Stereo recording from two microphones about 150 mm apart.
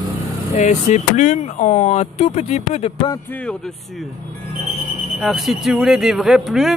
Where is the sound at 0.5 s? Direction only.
50° left (ahead or behind).